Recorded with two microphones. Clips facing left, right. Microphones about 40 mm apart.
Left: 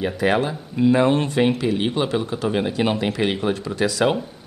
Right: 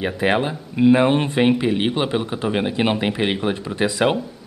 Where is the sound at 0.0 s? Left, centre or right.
Right.